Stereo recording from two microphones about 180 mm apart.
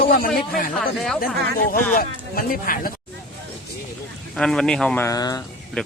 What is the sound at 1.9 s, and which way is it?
Speech, 55° left (ahead or behind).